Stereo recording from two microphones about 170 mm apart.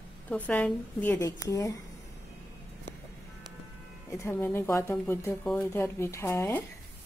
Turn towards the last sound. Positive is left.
turn(degrees=15)  # may be behind; listen again after turning